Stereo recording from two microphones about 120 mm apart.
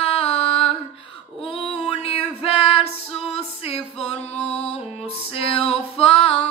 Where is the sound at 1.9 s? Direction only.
55° left (ahead or behind).